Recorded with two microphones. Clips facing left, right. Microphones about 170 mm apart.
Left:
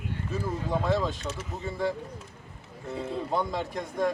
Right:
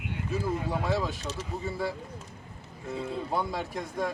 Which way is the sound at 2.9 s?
5° right (ahead or behind).